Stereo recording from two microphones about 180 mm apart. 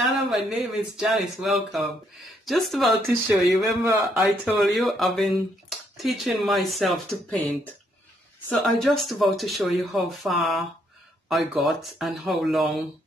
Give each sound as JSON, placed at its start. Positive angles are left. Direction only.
{"t": 0.0, "sound": "speech", "side_deg": 0}
{"t": 3.3, "sound": "speech", "side_deg": -15}
{"t": 4.0, "sound": "speech", "side_deg": 0}